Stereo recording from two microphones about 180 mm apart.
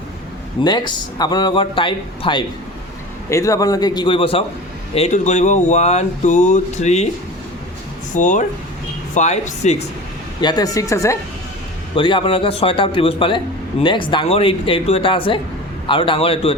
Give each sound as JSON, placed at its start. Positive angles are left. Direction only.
{"t": 0.6, "sound": "a man's voice", "side_deg": 25}
{"t": 3.2, "sound": "a man's voice", "side_deg": 15}
{"t": 8.1, "sound": "speech", "side_deg": 45}
{"t": 10.4, "sound": "a woman's voice", "side_deg": 20}
{"t": 11.9, "sound": "a man's voice", "side_deg": 25}